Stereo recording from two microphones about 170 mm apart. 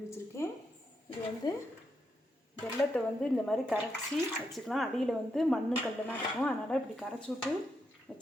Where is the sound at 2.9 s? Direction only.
Centre (ahead or behind).